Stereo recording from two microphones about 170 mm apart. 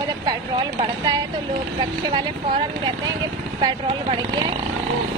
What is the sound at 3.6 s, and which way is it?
Speech, 25° right (ahead or behind).